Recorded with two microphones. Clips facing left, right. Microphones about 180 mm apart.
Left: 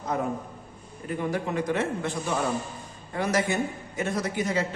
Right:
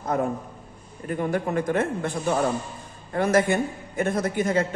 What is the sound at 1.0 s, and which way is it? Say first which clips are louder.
A man's voice: right 3 dB; 50° right (ahead or behind).